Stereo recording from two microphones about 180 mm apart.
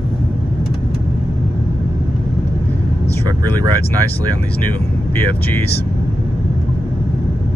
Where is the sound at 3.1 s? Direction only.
20° right (ahead or behind).